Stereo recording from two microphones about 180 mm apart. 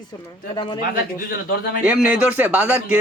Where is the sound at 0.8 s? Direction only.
50° left (ahead or behind).